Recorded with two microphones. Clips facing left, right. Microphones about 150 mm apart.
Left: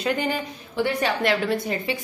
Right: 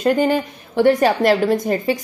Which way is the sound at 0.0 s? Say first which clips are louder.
Right 8 dB; 45° right (ahead or behind).